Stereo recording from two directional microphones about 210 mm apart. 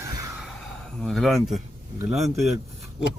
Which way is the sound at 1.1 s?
Centre (ahead or behind).